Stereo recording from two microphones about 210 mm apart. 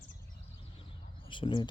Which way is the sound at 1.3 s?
25° left (ahead or behind).